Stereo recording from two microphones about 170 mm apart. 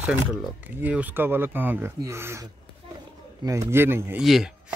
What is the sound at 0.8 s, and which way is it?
Speech, 10° right (ahead or behind).